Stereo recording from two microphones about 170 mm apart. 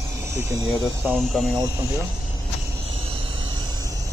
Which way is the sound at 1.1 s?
Centre (ahead or behind).